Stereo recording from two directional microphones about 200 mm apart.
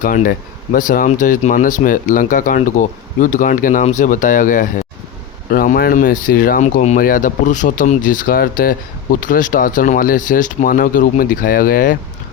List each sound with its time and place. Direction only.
0.0 s speech: 45° left (ahead or behind)